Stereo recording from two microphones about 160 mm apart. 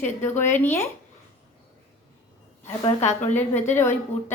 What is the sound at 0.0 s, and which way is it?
Speech, 15° left (ahead or behind).